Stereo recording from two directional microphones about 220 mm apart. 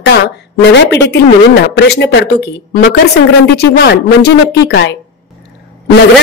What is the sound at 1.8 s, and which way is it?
Speech, 50° left (ahead or behind).